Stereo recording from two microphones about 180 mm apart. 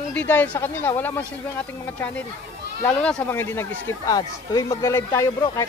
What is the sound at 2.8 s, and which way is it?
Speech, 5° left (ahead or behind).